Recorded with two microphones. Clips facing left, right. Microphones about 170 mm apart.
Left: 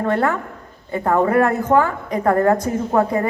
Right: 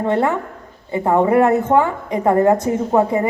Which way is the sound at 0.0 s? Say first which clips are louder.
Right 2 dB; 20° right (ahead or behind).